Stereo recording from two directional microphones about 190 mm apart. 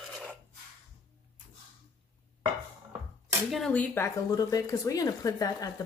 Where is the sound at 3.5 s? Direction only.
5° left (ahead or behind).